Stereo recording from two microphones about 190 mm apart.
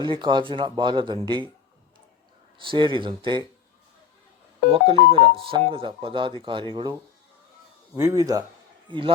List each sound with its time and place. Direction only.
0.0 s speech: 25° right (ahead or behind)
2.6 s speech: 25° right (ahead or behind)
4.7 s speech: 30° right (ahead or behind)
7.9 s speech: 20° right (ahead or behind)